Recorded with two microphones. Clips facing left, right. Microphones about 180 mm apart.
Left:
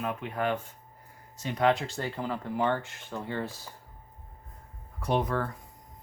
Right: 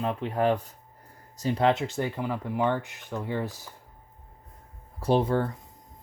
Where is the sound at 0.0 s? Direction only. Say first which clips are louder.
Right 5 dB; 30° right (ahead or behind); by 3.6 s 15° right (ahead or behind).